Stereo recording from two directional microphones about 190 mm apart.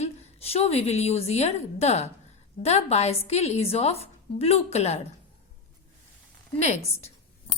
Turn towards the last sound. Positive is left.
turn(degrees=35)  # may be behind; listen again after turning